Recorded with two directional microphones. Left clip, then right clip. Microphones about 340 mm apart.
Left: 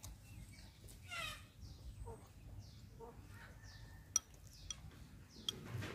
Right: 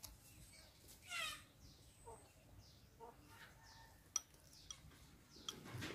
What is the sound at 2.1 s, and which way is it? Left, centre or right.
Bird, right.